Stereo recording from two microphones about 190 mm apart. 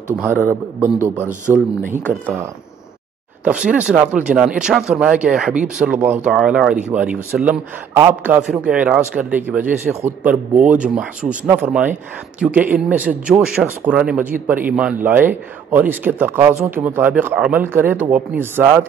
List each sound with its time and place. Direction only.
0.4 s speech: 10° right (ahead or behind)
1.5 s speech: 5° left (ahead or behind)
2.1 s speech: 10° right (ahead or behind)
3.4 s speech: 5° right (ahead or behind)